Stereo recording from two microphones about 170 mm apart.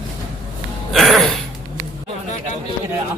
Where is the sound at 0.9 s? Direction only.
Centre (ahead or behind).